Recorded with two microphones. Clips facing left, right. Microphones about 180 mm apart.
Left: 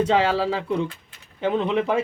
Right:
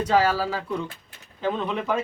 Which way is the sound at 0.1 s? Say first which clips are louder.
Left 1 dB; 25° left (ahead or behind).